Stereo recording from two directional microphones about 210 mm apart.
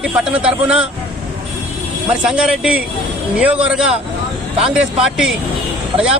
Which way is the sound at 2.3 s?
5° right (ahead or behind).